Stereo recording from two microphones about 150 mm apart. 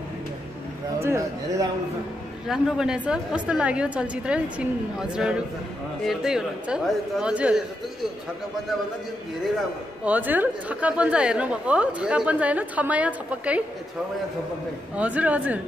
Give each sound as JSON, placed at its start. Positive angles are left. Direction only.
{"t": 1.0, "sound": "speech", "side_deg": -20}
{"t": 2.4, "sound": "a woman's voice", "side_deg": -5}
{"t": 10.0, "sound": "a woman's voice", "side_deg": -10}
{"t": 15.0, "sound": "a woman's voice", "side_deg": -10}